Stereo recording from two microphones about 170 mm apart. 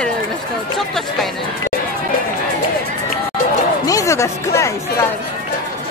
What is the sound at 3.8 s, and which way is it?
Speech, 20° left (ahead or behind).